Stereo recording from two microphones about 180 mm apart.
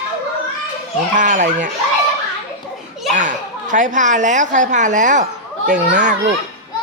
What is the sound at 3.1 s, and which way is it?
Speech, 45° right (ahead or behind).